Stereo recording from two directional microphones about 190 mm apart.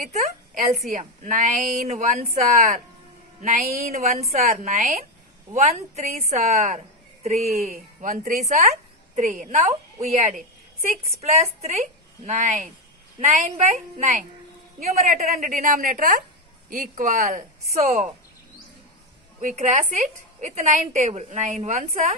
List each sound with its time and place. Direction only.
0.0 s a woman's voice: 35° right (ahead or behind)
4.0 s a woman's voice: 35° right (ahead or behind)
19.4 s a woman's voice: 40° right (ahead or behind)